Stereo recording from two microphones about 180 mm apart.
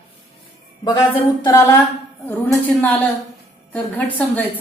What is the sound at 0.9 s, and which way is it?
Speech, 20° left (ahead or behind).